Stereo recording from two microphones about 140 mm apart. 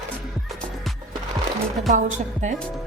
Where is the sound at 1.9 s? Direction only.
60° right (ahead or behind).